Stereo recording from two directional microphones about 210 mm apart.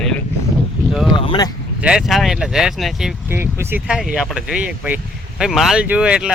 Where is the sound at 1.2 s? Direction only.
25° left (ahead or behind).